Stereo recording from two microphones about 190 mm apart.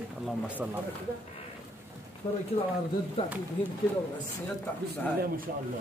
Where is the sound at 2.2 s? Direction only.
20° left (ahead or behind).